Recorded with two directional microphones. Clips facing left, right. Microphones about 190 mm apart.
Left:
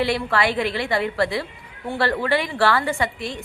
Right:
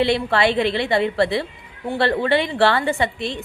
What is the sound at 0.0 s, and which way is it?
A woman's voice, 25° right (ahead or behind).